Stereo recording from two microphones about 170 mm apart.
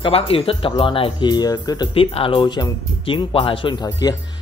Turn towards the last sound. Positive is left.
turn(degrees=25)  # may be behind; listen again after turning